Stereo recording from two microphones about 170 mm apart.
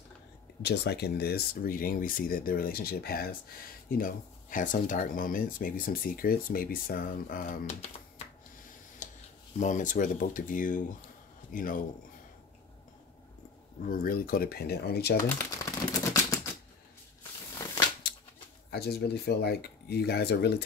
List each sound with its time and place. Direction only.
0.6 s speech: 75° left (ahead or behind); by 7.7 s 55° left (ahead or behind)
9.0 s a sound: 50° left (ahead or behind)
9.6 s speech: 50° left (ahead or behind)
13.8 s speech: 55° left (ahead or behind)
15.2 s typewriter: 15° left (ahead or behind)
18.7 s speech: 70° left (ahead or behind)